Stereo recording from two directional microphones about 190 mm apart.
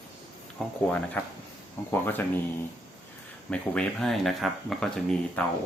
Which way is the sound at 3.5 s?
5° left (ahead or behind).